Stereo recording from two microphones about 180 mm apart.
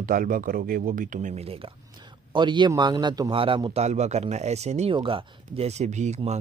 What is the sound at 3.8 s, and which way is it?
Speech, 40° right (ahead or behind).